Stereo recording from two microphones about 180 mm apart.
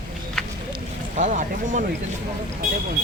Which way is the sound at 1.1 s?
45° right (ahead or behind).